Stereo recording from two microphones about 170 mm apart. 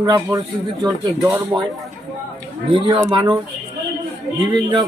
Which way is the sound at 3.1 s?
25° right (ahead or behind).